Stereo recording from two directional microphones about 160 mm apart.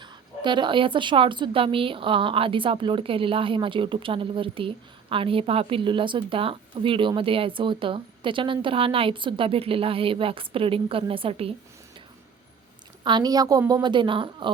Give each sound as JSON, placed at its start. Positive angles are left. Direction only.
{"t": 0.0, "sound": "a woman's voice", "side_deg": -30}
{"t": 13.1, "sound": "a woman's voice", "side_deg": -25}